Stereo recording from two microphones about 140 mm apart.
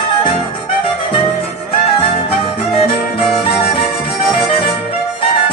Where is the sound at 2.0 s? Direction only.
40° left (ahead or behind).